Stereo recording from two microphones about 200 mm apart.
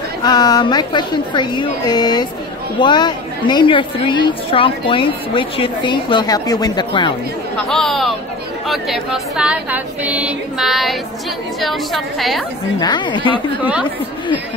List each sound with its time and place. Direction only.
0.2 s a woman's voice: 20° left (ahead or behind)
7.5 s speech: centre (ahead or behind)
12.8 s a woman's voice: 20° left (ahead or behind)
13.6 s a woman's voice: 5° right (ahead or behind)